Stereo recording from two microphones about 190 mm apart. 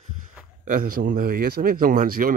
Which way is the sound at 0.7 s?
50° right (ahead or behind).